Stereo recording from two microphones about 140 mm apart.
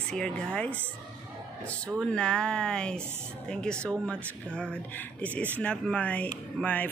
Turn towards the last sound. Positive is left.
turn(degrees=10)  # may be behind; listen again after turning